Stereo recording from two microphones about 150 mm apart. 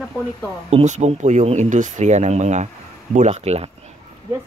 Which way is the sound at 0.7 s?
50° right (ahead or behind).